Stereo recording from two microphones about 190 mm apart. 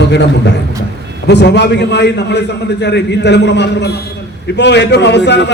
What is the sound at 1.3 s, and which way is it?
Speech, 65° left (ahead or behind).